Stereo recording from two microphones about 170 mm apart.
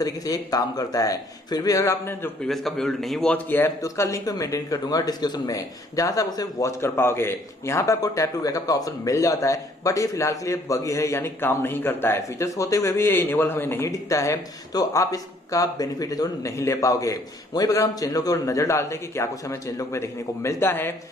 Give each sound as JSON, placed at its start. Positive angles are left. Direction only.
{"t": 0.0, "sound": "a man's voice", "side_deg": 20}
{"t": 2.4, "sound": "a man's voice", "side_deg": 0}